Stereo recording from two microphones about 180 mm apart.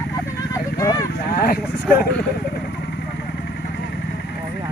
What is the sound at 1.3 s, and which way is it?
Speech, 60° left (ahead or behind).